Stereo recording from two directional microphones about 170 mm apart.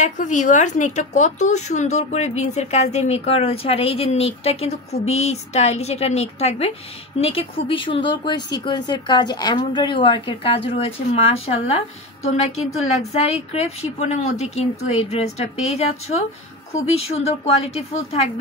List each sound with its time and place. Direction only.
0.0 s speech: 45° left (ahead or behind)